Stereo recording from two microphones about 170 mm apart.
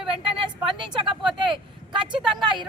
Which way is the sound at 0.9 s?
30° right (ahead or behind).